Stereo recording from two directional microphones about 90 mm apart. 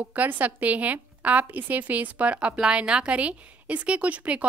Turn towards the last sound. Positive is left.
turn(degrees=-15)  # may be behind; listen again after turning